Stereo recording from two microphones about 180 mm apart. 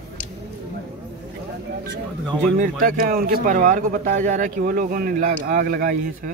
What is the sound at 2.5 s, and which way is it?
Speech, 50° right (ahead or behind).